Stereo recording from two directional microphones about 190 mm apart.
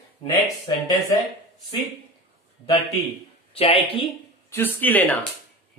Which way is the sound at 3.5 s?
30° left (ahead or behind).